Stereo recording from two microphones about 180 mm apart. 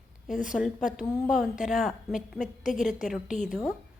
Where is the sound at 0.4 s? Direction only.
Centre (ahead or behind).